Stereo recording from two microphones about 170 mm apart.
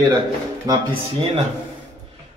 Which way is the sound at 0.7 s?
20° right (ahead or behind).